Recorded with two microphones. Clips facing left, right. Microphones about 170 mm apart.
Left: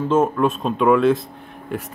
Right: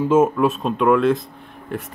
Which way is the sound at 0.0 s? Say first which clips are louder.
Right 2 dB; 10° right (ahead or behind).